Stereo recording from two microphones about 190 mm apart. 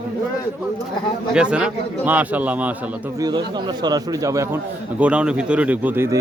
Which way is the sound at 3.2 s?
25° right (ahead or behind).